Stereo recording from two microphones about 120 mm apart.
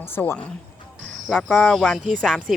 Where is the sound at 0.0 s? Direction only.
20° left (ahead or behind).